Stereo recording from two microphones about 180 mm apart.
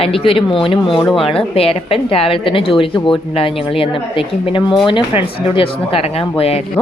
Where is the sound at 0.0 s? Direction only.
30° left (ahead or behind).